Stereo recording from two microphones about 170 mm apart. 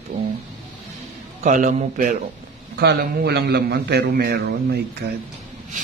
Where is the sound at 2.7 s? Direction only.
75° right (ahead or behind).